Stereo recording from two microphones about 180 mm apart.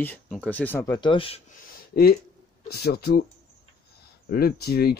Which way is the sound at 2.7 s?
60° left (ahead or behind).